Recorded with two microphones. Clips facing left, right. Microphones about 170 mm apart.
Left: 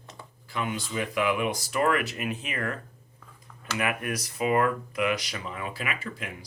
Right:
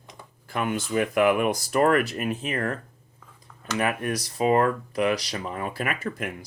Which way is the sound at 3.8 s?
35° right (ahead or behind).